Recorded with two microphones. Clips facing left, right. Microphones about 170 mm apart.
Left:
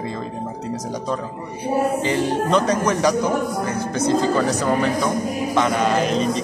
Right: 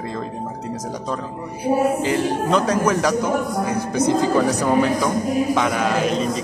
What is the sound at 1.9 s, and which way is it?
A man's voice, 5° right (ahead or behind).